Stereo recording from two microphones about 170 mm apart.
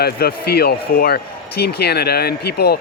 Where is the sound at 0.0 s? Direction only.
65° left (ahead or behind).